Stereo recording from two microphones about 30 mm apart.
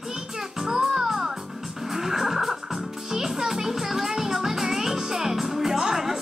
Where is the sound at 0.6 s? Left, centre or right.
Centre.